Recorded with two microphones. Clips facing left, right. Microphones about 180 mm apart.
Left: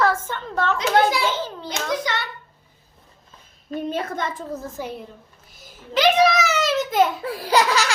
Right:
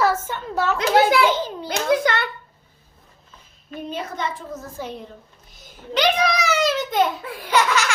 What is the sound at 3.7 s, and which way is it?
Speech, 50° left (ahead or behind).